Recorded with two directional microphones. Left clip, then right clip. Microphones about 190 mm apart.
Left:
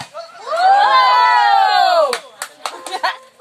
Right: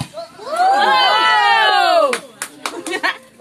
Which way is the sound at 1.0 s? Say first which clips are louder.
Left 2 dB; 50° left (ahead or behind).